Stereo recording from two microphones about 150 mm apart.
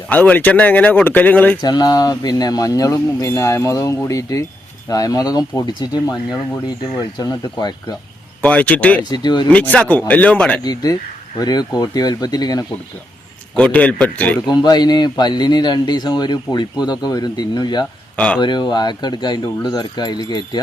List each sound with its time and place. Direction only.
0.1 s speech: 10° left (ahead or behind)
1.6 s a man's voice: 25° left (ahead or behind)
7.2 s a man's voice: 25° left (ahead or behind)
8.4 s speech: 10° left (ahead or behind)
9.0 s a man's voice: 30° left (ahead or behind)
9.5 s speech: 10° left (ahead or behind)
10.6 s a man's voice: 25° left (ahead or behind)
13.6 s speech: 10° left (ahead or behind)
14.4 s a man's voice: 25° left (ahead or behind)